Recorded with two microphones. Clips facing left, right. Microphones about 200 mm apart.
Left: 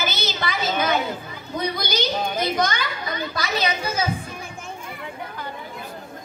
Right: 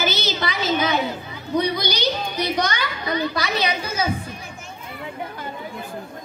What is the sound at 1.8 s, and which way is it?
A woman's voice, 50° left (ahead or behind).